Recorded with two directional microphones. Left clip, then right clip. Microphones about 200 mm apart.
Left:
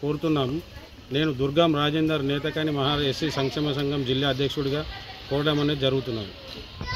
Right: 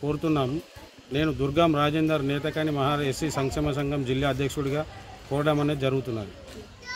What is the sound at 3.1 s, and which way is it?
Speech, 40° right (ahead or behind).